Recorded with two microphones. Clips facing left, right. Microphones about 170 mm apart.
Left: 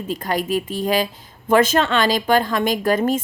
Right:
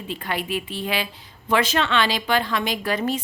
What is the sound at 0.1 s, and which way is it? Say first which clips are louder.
A woman's voice: left 6 dB; 40° left (ahead or behind).